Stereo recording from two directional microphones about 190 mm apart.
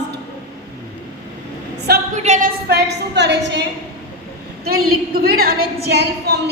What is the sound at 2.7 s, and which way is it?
Speech, 60° right (ahead or behind).